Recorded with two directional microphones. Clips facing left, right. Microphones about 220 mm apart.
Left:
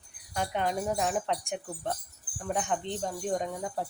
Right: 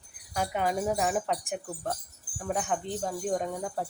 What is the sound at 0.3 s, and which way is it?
Wind chime, 5° right (ahead or behind).